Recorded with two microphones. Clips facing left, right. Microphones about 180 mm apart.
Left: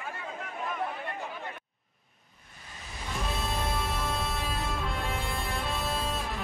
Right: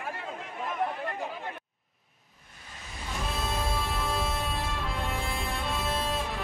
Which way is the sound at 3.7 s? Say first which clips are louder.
Right 1 dB; centre (ahead or behind).